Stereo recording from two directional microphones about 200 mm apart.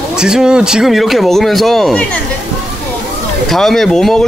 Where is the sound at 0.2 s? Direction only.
5° right (ahead or behind).